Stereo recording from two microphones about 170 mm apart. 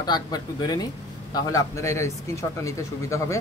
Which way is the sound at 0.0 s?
25° left (ahead or behind).